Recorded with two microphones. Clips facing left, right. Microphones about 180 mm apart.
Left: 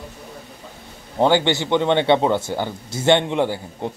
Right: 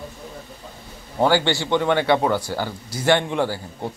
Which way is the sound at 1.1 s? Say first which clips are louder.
Left 2 dB; 20° left (ahead or behind).